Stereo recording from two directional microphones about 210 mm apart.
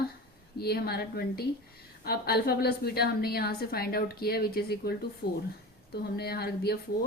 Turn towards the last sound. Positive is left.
turn(degrees=50)  # may be behind; listen again after turning